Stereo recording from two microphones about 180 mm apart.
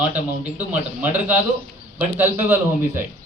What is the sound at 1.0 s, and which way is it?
A man's voice, 10° right (ahead or behind).